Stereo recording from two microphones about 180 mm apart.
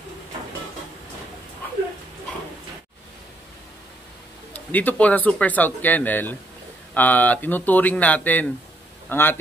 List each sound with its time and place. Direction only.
4.6 s speech: 10° left (ahead or behind)